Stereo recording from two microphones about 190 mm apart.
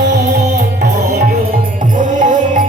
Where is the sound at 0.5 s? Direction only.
45° right (ahead or behind).